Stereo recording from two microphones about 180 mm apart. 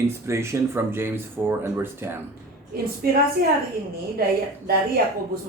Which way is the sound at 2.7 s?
55° right (ahead or behind).